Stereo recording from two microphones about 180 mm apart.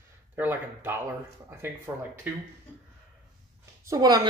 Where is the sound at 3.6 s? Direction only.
20° right (ahead or behind).